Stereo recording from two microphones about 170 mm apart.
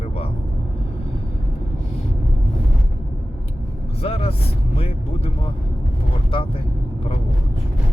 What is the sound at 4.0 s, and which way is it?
Speech, 35° left (ahead or behind).